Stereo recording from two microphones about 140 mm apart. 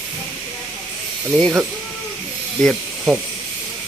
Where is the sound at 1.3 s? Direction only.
Centre (ahead or behind).